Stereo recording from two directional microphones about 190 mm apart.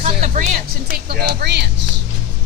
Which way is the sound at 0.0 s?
40° right (ahead or behind).